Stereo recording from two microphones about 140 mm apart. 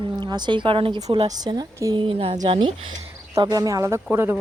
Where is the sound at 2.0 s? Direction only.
40° right (ahead or behind).